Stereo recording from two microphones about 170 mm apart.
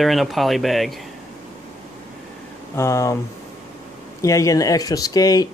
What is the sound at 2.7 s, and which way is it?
Speech, 15° left (ahead or behind).